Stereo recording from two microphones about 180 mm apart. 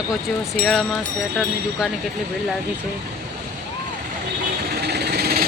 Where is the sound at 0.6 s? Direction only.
Centre (ahead or behind).